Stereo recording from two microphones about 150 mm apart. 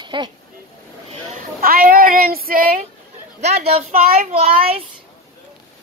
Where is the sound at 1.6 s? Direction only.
75° right (ahead or behind).